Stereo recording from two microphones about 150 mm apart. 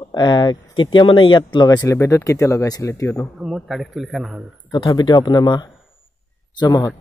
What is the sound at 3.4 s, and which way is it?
A man's voice, centre (ahead or behind).